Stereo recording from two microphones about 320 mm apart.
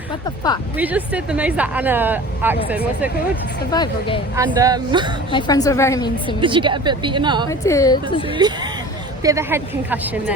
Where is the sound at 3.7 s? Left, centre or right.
Centre.